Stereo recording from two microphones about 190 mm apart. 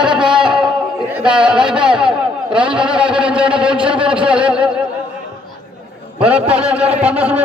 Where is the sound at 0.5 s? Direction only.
25° right (ahead or behind).